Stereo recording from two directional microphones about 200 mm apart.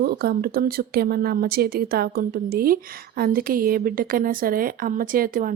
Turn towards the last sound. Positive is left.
turn(degrees=-45)  # may be behind; listen again after turning